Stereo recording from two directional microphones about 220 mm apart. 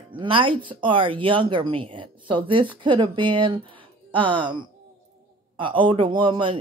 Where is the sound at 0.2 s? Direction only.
25° right (ahead or behind).